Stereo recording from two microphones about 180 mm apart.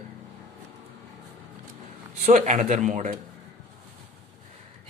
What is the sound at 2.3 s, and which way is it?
Speech, 40° right (ahead or behind).